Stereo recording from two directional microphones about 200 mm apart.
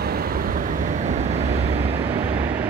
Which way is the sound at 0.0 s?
50° right (ahead or behind).